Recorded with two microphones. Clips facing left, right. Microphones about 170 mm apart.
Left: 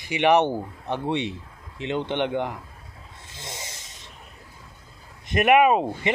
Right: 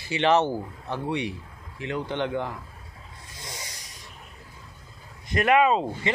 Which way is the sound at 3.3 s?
25° left (ahead or behind).